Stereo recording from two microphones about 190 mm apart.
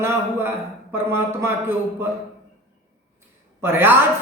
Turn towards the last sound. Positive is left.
turn(degrees=-10)  # may be behind; listen again after turning